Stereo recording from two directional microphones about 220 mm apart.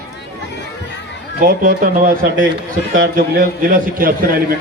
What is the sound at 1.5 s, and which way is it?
A man's voice, 40° right (ahead or behind).